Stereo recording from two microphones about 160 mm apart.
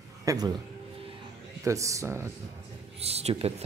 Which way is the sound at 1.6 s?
20° right (ahead or behind).